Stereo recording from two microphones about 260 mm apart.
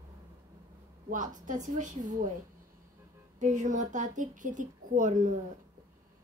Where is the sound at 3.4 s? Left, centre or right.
Right.